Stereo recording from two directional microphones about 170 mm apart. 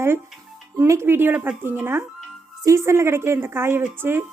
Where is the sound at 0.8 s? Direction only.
15° right (ahead or behind).